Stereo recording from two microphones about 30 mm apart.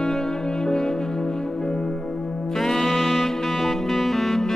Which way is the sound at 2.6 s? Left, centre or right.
Centre.